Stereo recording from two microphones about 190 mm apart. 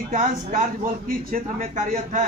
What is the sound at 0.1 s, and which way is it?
A man's voice, 45° right (ahead or behind).